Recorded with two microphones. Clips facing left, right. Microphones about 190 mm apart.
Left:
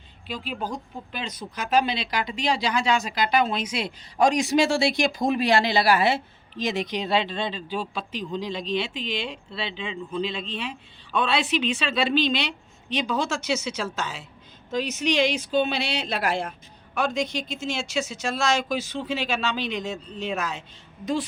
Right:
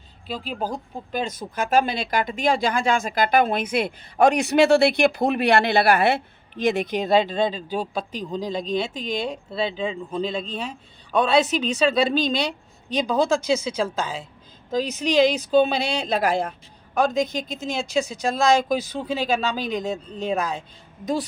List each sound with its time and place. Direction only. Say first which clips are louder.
0.3 s speech: right 3 dB; 40° right (ahead or behind)